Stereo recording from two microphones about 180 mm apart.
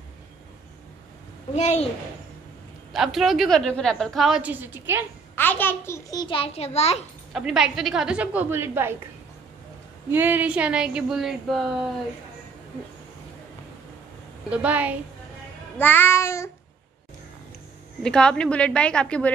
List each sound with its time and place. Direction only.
1.5 s a woman's voice: 40° left (ahead or behind)
2.9 s a woman's voice: centre (ahead or behind)
5.3 s a child's voice: 10° left (ahead or behind); by 7.1 s 35° left (ahead or behind)
7.3 s a woman's voice: 5° right (ahead or behind)
10.1 s a woman's voice: 10° right (ahead or behind)
14.5 s a woman's voice: 10° right (ahead or behind)
15.8 s child singing: 10° left (ahead or behind)
18.0 s a woman's voice: 5° left (ahead or behind)